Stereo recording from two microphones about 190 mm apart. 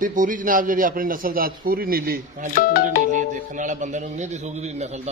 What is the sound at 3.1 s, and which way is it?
A man's voice, 40° right (ahead or behind).